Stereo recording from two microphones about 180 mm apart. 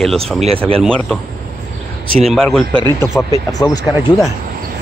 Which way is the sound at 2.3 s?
Centre (ahead or behind).